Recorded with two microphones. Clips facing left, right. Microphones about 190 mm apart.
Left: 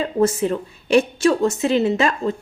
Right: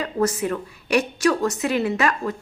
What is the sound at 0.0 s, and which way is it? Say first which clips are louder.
A woman's voice: left 4 dB; 25° left (ahead or behind).